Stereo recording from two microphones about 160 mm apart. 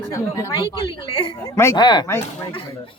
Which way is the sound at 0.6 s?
30° left (ahead or behind).